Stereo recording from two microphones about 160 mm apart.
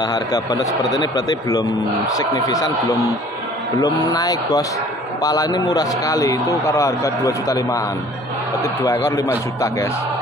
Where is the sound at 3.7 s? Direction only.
25° left (ahead or behind).